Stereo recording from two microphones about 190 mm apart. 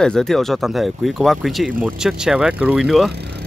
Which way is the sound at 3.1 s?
60° right (ahead or behind).